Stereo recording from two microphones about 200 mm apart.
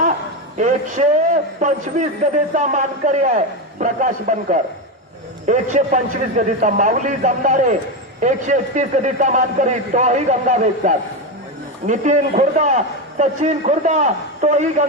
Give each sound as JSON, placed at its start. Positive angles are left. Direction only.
{"t": 0.5, "sound": "a man's voice", "side_deg": -35}